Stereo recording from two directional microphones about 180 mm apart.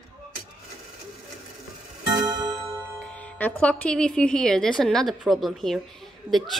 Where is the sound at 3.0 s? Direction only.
5° left (ahead or behind).